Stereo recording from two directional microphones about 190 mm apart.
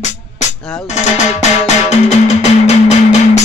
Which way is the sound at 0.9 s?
35° left (ahead or behind).